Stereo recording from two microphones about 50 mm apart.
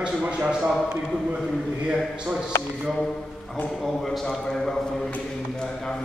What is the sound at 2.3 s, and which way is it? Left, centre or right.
Speech, centre.